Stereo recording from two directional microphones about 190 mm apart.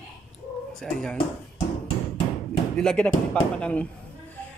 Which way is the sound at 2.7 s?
5° left (ahead or behind).